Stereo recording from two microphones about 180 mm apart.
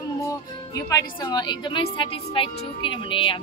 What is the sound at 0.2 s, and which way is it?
A woman's voice, 15° left (ahead or behind).